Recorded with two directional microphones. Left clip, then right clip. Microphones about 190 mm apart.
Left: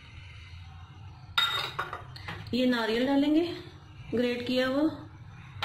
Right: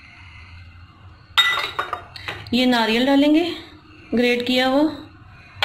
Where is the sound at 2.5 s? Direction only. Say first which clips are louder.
Right 9 dB; 40° right (ahead or behind).